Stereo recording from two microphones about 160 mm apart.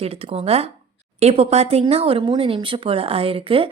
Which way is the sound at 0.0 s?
40° right (ahead or behind).